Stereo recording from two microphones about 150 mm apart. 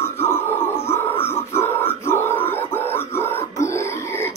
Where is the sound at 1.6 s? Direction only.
15° left (ahead or behind).